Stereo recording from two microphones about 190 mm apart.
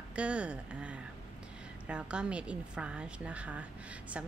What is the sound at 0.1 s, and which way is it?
A woman's voice, 5° right (ahead or behind).